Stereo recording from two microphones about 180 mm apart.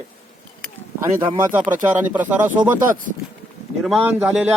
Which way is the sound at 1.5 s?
10° right (ahead or behind).